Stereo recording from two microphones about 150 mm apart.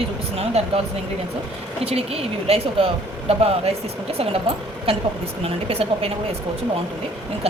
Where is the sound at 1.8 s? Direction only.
40° right (ahead or behind).